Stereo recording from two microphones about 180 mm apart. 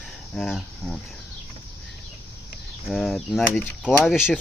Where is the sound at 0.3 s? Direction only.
Centre (ahead or behind).